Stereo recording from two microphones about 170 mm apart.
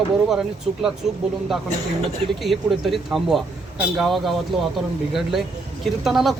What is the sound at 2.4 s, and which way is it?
Speech, centre (ahead or behind).